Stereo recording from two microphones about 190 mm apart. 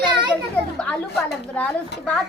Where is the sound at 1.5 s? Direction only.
5° left (ahead or behind).